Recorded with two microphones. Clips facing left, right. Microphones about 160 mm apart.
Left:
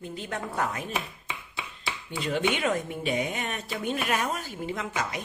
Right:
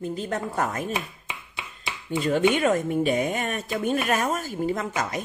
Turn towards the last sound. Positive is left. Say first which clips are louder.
# right 4 dB
turn(degrees=-45)  # may be behind; listen again after turning